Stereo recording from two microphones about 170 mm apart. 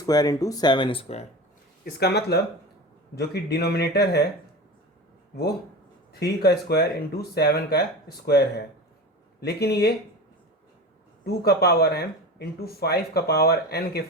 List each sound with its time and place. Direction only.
0.0 s speech: 20° left (ahead or behind); by 1.3 s 40° left (ahead or behind)
1.8 s speech: 75° left (ahead or behind)
6.1 s speech: 70° left (ahead or behind)
11.3 s speech: 70° left (ahead or behind)